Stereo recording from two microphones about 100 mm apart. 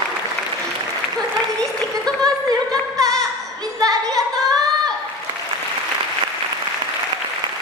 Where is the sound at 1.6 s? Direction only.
10° left (ahead or behind).